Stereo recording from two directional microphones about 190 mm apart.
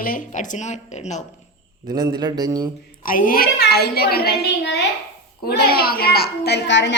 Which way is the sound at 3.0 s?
45° left (ahead or behind).